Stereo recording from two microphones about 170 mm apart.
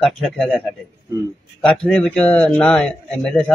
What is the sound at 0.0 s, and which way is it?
A man's voice, centre (ahead or behind).